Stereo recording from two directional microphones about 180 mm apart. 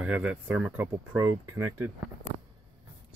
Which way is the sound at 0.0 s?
5° right (ahead or behind).